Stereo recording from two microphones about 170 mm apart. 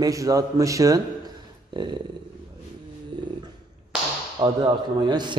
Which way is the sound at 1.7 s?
25° right (ahead or behind).